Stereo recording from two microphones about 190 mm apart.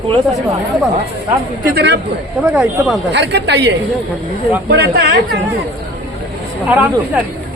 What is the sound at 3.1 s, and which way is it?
Speech, 65° right (ahead or behind).